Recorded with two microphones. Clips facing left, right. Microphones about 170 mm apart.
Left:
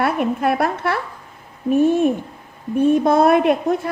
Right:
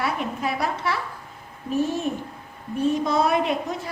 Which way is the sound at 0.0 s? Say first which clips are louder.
Left 8 dB; 55° left (ahead or behind).